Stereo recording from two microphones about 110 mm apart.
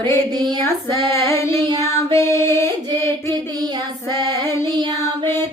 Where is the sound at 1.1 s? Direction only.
25° left (ahead or behind).